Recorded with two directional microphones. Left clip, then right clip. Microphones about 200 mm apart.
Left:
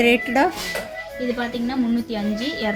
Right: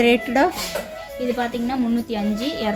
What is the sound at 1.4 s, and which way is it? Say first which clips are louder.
A woman's voice: right 1 dB; 20° right (ahead or behind).